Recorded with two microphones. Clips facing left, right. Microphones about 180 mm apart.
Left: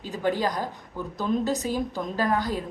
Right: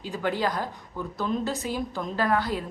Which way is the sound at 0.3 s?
15° left (ahead or behind).